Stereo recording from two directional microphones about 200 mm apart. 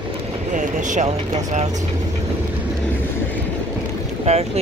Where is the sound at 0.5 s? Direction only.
40° right (ahead or behind).